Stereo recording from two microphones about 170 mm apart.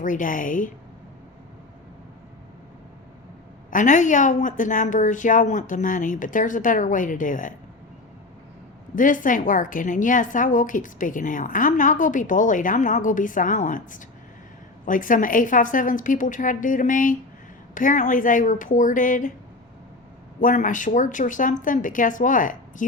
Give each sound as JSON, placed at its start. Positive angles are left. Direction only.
{"t": 0.0, "sound": "a woman's voice", "side_deg": 50}
{"t": 3.7, "sound": "a woman's voice", "side_deg": 50}
{"t": 9.0, "sound": "a woman's voice", "side_deg": 50}
{"t": 20.4, "sound": "a woman's voice", "side_deg": 50}